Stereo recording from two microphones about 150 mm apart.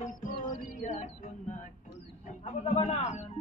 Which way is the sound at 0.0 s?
60° left (ahead or behind).